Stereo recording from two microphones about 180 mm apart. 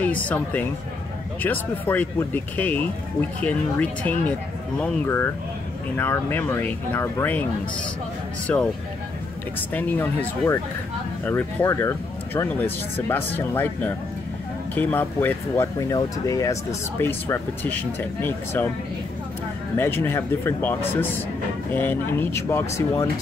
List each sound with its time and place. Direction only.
0.0 s speech: 10° left (ahead or behind)
8.5 s speech: 10° left (ahead or behind)
9.7 s speech: 10° left (ahead or behind)
19.8 s speech: 15° left (ahead or behind)